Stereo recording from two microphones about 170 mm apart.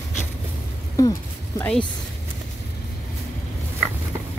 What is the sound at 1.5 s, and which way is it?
Speech, 5° left (ahead or behind).